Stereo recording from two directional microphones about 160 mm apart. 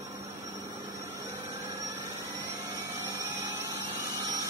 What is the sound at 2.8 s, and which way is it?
Vacuum cleaner, 20° right (ahead or behind).